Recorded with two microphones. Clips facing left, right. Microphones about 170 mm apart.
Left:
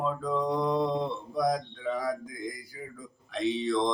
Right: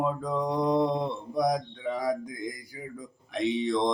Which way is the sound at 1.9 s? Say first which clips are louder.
Right 5 dB; 20° right (ahead or behind).